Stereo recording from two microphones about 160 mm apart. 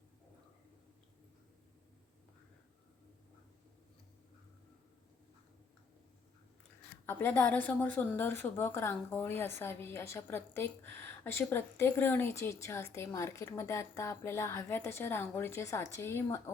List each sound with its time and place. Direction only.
7.0 s a woman's voice: 15° left (ahead or behind)